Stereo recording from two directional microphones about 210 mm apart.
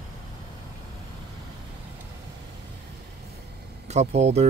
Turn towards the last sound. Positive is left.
turn(degrees=-30)  # may be behind; listen again after turning